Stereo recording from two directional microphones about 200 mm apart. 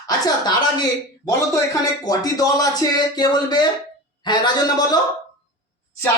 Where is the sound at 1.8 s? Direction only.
20° left (ahead or behind).